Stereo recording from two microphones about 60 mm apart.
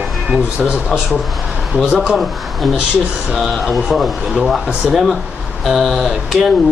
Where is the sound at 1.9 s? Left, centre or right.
Centre.